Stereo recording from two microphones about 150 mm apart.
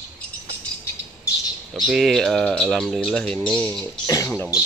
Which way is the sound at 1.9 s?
Centre (ahead or behind).